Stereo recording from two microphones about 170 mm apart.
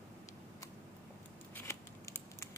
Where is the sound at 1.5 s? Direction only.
15° left (ahead or behind).